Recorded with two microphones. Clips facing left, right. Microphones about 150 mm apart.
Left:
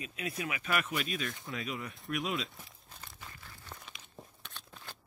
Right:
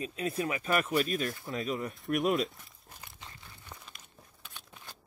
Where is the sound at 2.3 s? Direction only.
Centre (ahead or behind).